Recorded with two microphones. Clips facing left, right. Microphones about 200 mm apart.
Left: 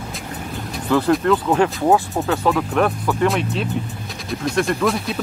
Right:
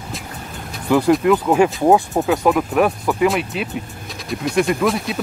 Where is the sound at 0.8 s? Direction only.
15° right (ahead or behind).